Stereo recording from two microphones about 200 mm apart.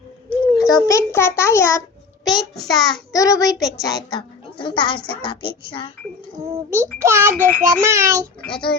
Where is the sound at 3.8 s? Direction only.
20° left (ahead or behind).